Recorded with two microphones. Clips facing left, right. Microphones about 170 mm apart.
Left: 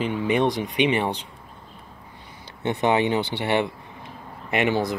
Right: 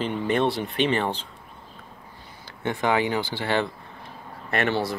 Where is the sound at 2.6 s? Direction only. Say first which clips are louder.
Left 2 dB; 20° left (ahead or behind).